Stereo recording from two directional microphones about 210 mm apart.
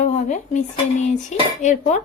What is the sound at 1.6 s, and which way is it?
Speech, 35° left (ahead or behind).